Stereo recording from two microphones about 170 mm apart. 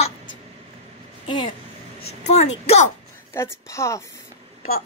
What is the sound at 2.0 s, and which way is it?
Speech, 40° left (ahead or behind).